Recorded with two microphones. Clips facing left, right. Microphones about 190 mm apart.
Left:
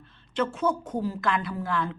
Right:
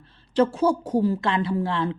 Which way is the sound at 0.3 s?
35° right (ahead or behind).